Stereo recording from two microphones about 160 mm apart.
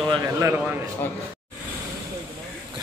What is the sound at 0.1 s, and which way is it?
Speech, 20° right (ahead or behind).